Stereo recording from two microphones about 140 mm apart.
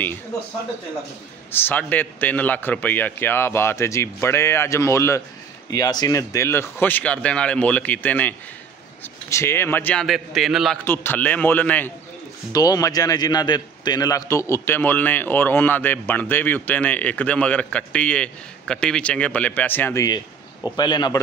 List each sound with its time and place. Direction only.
1.5 s a man's voice: 15° left (ahead or behind)
10.0 s a man's voice: centre (ahead or behind)
10.8 s a man's voice: 15° left (ahead or behind)
12.5 s a man's voice: 25° left (ahead or behind)
20.7 s a man's voice: 30° left (ahead or behind)